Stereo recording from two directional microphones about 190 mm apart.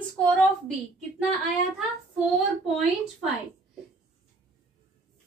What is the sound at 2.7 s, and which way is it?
Speech, centre (ahead or behind).